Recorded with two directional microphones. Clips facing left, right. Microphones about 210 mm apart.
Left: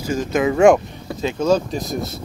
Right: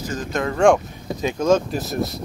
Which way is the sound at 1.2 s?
15° right (ahead or behind).